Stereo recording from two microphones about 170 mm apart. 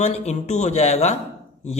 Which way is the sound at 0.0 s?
40° left (ahead or behind).